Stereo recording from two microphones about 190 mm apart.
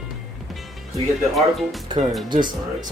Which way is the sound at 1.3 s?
Centre (ahead or behind).